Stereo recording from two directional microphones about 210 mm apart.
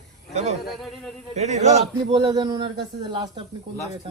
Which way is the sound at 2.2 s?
20° right (ahead or behind).